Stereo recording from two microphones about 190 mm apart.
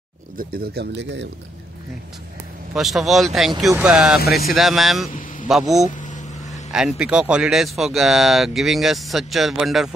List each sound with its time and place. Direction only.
0.4 s speech: 55° right (ahead or behind)
2.7 s speech: centre (ahead or behind)
5.9 s vehicle: 40° left (ahead or behind)
6.7 s speech: 5° right (ahead or behind)